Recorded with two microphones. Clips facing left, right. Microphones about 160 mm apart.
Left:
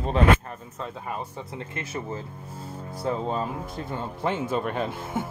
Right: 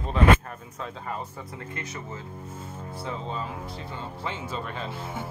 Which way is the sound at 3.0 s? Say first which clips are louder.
Left 7 dB; 45° left (ahead or behind).